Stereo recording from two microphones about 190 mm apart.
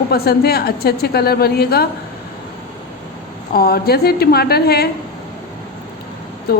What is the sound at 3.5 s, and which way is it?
A woman's voice, 55° left (ahead or behind).